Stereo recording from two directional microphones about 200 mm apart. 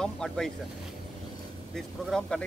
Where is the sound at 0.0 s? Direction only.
5° left (ahead or behind).